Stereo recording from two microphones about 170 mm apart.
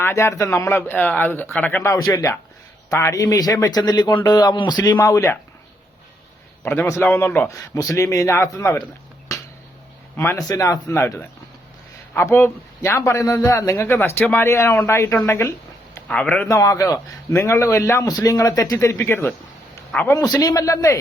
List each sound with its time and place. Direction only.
0.0 s a man's voice: 15° left (ahead or behind)
6.7 s a man's voice: 15° left (ahead or behind)
9.3 s a sound: 20° left (ahead or behind)
10.2 s a man's voice: 15° left (ahead or behind)
20.1 s speech: 20° left (ahead or behind)